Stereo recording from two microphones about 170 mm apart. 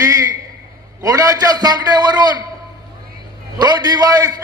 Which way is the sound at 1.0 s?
20° right (ahead or behind).